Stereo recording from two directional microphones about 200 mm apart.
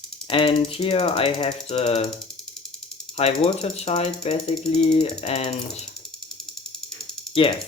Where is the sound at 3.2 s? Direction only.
30° left (ahead or behind).